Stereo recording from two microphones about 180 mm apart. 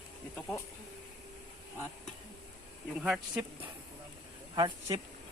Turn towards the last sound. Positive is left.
turn(degrees=-20)  # may be behind; listen again after turning